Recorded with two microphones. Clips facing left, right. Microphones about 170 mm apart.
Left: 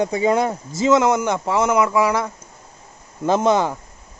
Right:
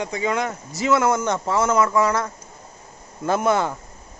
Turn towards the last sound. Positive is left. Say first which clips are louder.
# left 3 dB
turn(degrees=20)  # may be behind; listen again after turning